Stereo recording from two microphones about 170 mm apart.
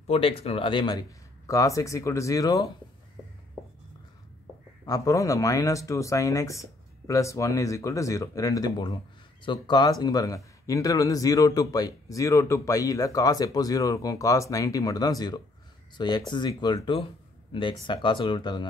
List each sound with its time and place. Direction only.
0.0 s speech: 35° left (ahead or behind)
4.8 s speech: 20° left (ahead or behind)